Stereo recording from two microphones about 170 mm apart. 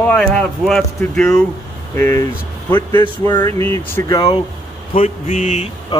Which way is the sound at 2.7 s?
25° left (ahead or behind).